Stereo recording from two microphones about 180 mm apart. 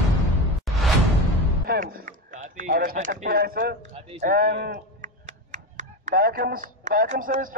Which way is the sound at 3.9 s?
35° right (ahead or behind).